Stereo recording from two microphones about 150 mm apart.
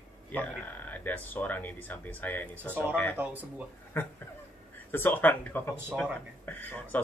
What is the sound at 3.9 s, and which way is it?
Speech, 15° left (ahead or behind).